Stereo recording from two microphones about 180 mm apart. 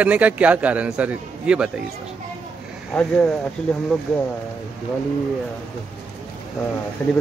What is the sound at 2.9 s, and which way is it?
Speech, 5° left (ahead or behind).